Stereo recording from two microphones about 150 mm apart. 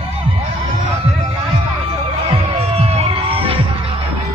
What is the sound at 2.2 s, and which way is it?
Music, 40° right (ahead or behind).